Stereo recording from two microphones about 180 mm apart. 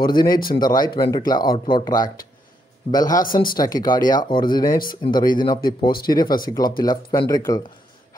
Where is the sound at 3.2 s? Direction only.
50° left (ahead or behind).